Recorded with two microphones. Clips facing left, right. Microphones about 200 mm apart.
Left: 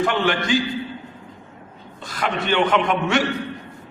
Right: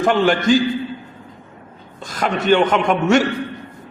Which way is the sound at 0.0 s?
45° right (ahead or behind).